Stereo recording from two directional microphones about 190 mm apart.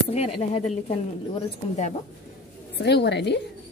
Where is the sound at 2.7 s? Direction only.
60° left (ahead or behind).